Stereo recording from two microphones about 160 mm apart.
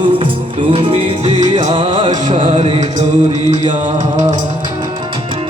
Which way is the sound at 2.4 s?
35° right (ahead or behind).